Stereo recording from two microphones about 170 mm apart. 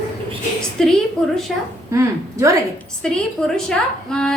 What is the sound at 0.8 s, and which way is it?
Speech, 5° left (ahead or behind).